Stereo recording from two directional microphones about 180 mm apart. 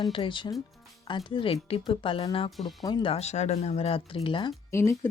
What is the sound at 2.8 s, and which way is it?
Speech, 25° left (ahead or behind).